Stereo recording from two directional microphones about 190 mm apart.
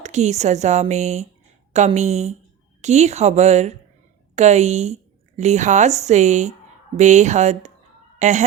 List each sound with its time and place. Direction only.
0.0 s speech: 35° right (ahead or behind)